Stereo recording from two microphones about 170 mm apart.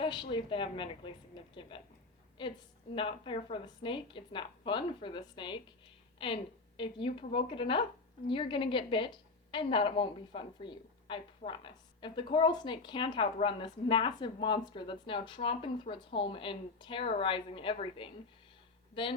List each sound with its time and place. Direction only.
0.0 s a woman's voice: 30° left (ahead or behind)